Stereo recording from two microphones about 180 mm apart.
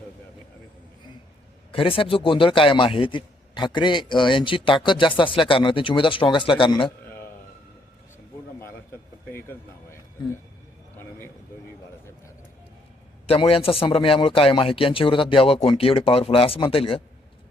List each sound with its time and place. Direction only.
1.7 s a man's voice: 30° left (ahead or behind)
8.6 s speech: 15° left (ahead or behind)
13.2 s a man's voice: 35° left (ahead or behind)